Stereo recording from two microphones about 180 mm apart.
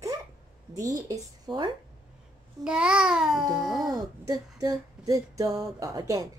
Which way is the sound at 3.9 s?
20° right (ahead or behind).